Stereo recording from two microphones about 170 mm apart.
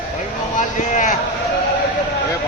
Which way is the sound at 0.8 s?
50° left (ahead or behind).